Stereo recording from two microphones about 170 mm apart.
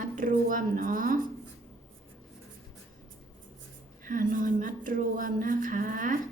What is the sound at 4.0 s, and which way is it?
Speech, 50° right (ahead or behind).